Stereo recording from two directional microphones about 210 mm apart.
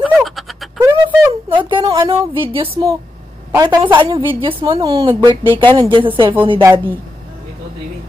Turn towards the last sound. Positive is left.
turn(degrees=-25)  # may be behind; listen again after turning